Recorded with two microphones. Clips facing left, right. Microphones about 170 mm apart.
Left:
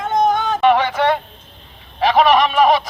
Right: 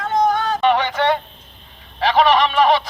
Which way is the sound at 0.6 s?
10° left (ahead or behind).